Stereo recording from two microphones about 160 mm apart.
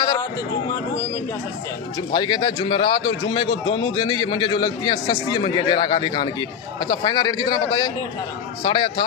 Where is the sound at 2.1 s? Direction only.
30° left (ahead or behind).